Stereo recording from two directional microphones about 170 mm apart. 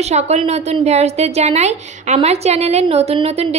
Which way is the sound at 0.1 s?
40° right (ahead or behind).